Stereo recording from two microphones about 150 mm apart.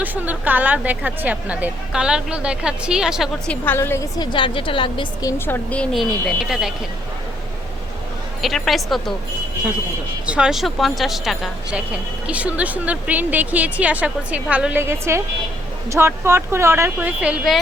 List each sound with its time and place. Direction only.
0.0 s a woman's voice: 10° right (ahead or behind)
3.5 s a woman's voice: 15° left (ahead or behind)
4.3 s a woman's voice: 35° left (ahead or behind)
5.5 s speech: 10° left (ahead or behind)
8.4 s speech: centre (ahead or behind)
10.2 s a woman's voice: 5° right (ahead or behind)